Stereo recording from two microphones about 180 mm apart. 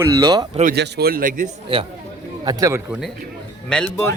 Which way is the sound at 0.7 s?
70° right (ahead or behind).